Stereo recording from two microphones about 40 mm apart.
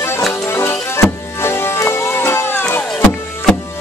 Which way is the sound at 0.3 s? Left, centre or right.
Left.